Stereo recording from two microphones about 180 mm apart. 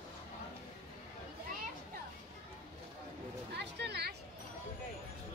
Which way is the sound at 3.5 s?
65° right (ahead or behind).